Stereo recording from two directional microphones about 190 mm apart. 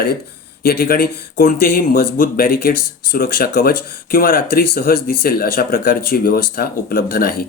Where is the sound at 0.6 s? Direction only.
55° left (ahead or behind).